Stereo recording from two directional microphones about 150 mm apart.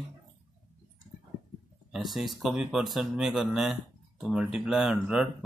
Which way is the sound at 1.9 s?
Centre (ahead or behind).